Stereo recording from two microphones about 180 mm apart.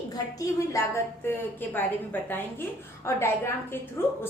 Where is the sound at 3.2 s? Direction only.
15° left (ahead or behind).